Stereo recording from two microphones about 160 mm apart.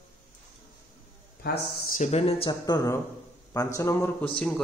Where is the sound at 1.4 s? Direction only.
75° left (ahead or behind).